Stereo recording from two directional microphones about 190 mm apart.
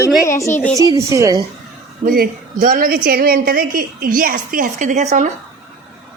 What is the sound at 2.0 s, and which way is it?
A woman's voice, 45° right (ahead or behind).